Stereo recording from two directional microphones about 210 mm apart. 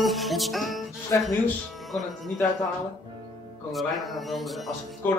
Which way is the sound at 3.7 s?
Centre (ahead or behind).